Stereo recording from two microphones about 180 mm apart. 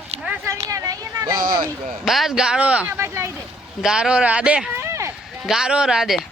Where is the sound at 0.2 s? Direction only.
10° right (ahead or behind).